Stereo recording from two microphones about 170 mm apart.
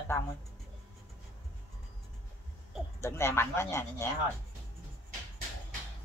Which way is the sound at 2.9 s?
15° left (ahead or behind).